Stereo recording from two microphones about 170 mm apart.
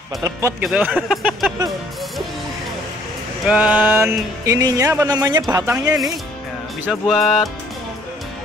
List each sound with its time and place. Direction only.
0.2 s speech: 15° right (ahead or behind)
0.7 s speech: 5° right (ahead or behind)
3.4 s speech: 5° right (ahead or behind)
6.9 s speech: centre (ahead or behind)